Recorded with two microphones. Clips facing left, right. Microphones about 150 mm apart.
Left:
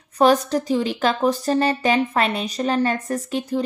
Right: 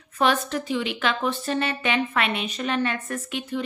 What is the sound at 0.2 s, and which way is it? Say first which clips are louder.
Speech: left 6 dB; 40° left (ahead or behind).